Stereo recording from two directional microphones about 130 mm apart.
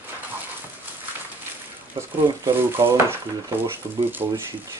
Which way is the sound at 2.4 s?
20° right (ahead or behind).